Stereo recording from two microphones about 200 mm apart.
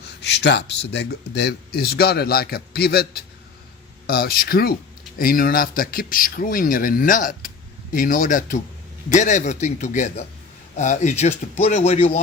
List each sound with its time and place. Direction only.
0.2 s speech: 55° left (ahead or behind); by 12.2 s 30° left (ahead or behind)